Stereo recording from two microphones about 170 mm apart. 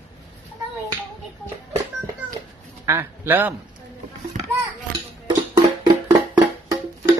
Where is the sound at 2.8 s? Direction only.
15° right (ahead or behind).